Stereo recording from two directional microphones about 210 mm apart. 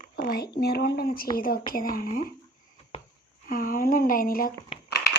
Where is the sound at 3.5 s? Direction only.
45° left (ahead or behind).